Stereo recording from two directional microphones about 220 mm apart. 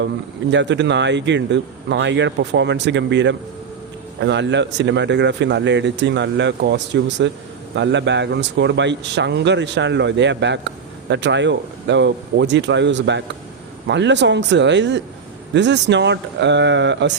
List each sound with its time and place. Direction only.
0.5 s speech: 55° right (ahead or behind)